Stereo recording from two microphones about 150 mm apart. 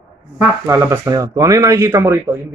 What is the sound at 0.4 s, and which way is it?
Speech, 15° right (ahead or behind).